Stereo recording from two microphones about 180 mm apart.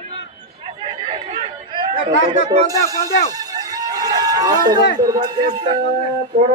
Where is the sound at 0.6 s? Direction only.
30° right (ahead or behind).